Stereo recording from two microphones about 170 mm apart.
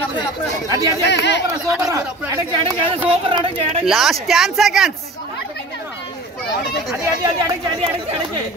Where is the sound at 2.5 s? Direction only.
30° right (ahead or behind).